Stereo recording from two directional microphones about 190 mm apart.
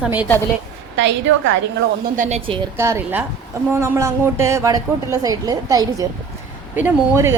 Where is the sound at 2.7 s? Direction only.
15° right (ahead or behind).